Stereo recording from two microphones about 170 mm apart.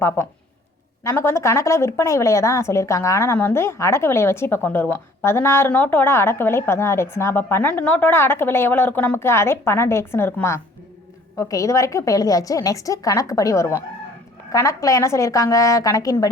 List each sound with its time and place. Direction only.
0.2 s a woman's voice: 15° left (ahead or behind)